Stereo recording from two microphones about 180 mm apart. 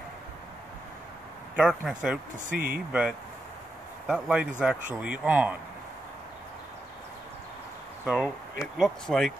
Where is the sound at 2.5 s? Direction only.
55° right (ahead or behind).